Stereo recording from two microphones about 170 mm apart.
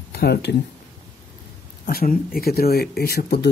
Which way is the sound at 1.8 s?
60° left (ahead or behind).